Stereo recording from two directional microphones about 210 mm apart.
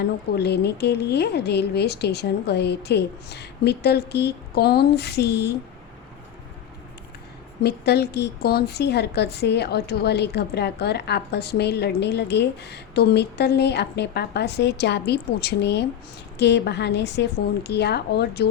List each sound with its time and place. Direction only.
0.0 s a woman's voice: 50° left (ahead or behind)
7.6 s a woman's voice: 50° left (ahead or behind)